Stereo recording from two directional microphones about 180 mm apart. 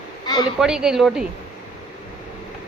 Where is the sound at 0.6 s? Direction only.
5° right (ahead or behind).